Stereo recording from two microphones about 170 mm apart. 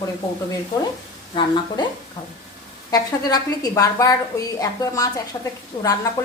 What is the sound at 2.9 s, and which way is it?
A woman's voice, 20° left (ahead or behind).